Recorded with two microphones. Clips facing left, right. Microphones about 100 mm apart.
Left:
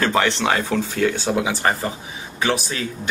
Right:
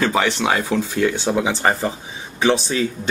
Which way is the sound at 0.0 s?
5° right (ahead or behind).